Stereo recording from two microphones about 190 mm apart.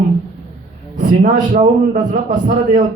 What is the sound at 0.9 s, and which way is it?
A man's voice, 40° right (ahead or behind).